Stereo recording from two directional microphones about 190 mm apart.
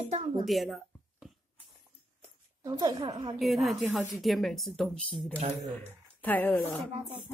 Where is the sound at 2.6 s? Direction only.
20° right (ahead or behind).